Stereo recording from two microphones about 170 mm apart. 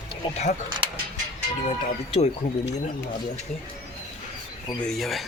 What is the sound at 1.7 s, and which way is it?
Speech, 35° left (ahead or behind).